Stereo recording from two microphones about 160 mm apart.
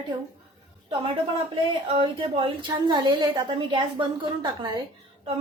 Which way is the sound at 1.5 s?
35° right (ahead or behind).